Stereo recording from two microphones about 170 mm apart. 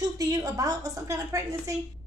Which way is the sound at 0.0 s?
20° right (ahead or behind).